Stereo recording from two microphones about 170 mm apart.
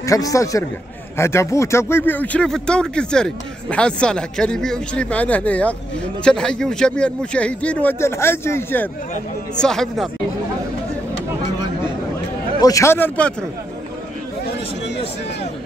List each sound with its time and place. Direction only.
0.0 s a man's voice: 20° left (ahead or behind); by 10.0 s 5° left (ahead or behind)
12.5 s speech: 20° left (ahead or behind)